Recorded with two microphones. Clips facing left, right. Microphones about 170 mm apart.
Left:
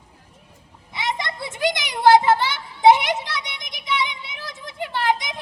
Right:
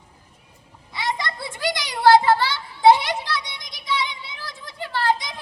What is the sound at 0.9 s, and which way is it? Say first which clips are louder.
Children playing: even; 20° left (ahead or behind).